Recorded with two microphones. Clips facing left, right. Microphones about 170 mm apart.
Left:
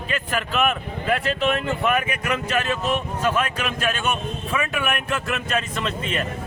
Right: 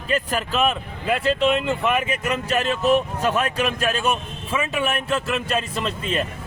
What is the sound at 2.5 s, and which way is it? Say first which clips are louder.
Speech: right 6 dB; 35° right (ahead or behind).